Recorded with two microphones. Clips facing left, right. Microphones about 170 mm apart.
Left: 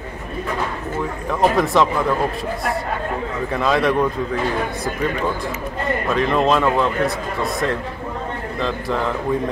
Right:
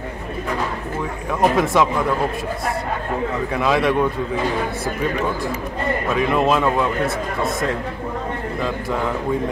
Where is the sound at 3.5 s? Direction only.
5° right (ahead or behind).